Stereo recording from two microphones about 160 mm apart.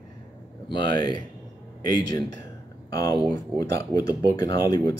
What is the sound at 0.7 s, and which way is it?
Speech, 30° left (ahead or behind).